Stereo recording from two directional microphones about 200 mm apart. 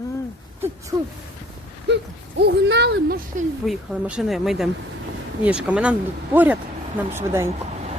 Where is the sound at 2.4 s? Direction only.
60° right (ahead or behind).